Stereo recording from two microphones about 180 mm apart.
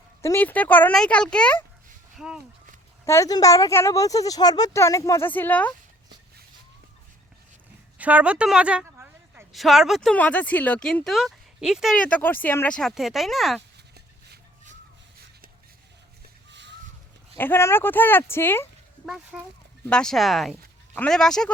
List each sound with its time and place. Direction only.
0.2 s speech: 15° left (ahead or behind); by 2.4 s 5° right (ahead or behind)
3.0 s speech: 15° left (ahead or behind)
7.9 s a sound: 10° right (ahead or behind)
9.5 s speech: centre (ahead or behind)
16.5 s a sound: 80° right
17.3 s speech: 10° left (ahead or behind)
19.0 s speech: centre (ahead or behind)